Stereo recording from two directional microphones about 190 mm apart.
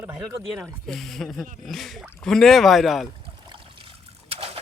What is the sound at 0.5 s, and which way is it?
Speech, 5° right (ahead or behind).